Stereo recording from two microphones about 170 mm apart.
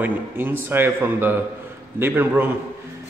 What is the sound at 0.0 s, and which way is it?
A man's voice, 10° right (ahead or behind).